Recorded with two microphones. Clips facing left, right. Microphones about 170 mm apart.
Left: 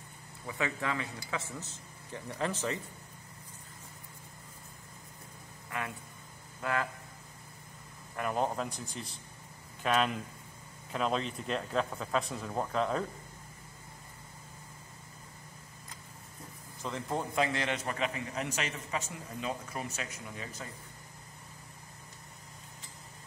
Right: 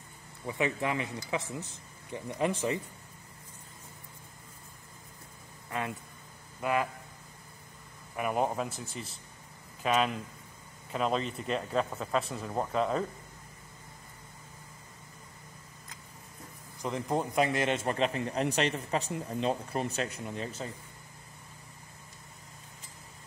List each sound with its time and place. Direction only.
0.5 s speech: 20° right (ahead or behind)
5.7 s speech: 20° right (ahead or behind)
8.2 s speech: 10° right (ahead or behind)
16.8 s a man's voice: 15° right (ahead or behind)